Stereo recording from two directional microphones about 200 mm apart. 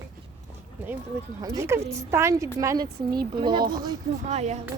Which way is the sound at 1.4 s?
15° right (ahead or behind).